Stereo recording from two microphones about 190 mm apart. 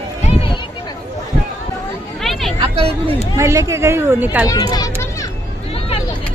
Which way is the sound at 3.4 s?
15° right (ahead or behind).